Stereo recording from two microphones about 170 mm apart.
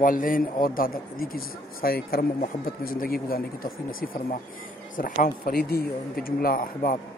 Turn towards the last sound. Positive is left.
turn(degrees=60)  # may be behind; listen again after turning